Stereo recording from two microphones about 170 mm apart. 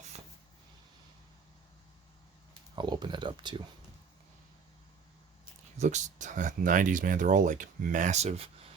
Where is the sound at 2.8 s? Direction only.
25° right (ahead or behind).